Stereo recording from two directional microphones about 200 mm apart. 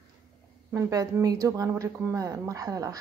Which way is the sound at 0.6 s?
15° right (ahead or behind).